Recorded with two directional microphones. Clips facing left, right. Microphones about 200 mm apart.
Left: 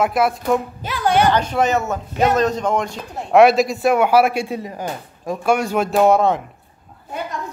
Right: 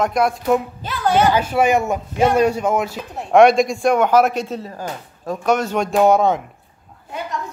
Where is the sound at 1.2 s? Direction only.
5° right (ahead or behind).